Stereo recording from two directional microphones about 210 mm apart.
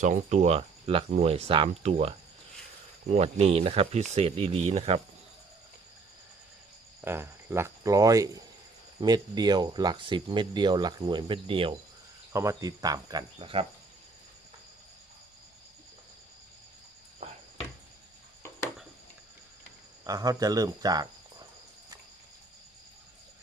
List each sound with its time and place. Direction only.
0.0 s speech: 35° right (ahead or behind)
7.0 s speech: 10° right (ahead or behind)
12.3 s cricket: 15° right (ahead or behind)
20.1 s cricket: 15° right (ahead or behind)